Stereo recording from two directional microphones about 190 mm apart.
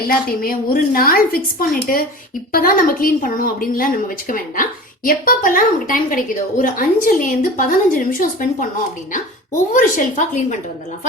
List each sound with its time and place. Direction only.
0.0 s a woman's voice: 50° left (ahead or behind)